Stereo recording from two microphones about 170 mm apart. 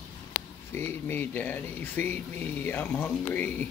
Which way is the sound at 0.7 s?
10° left (ahead or behind).